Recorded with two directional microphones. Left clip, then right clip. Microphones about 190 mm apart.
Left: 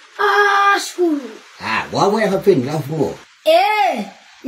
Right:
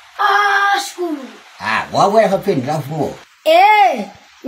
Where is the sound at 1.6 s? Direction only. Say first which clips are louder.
Right 3 dB; 15° right (ahead or behind).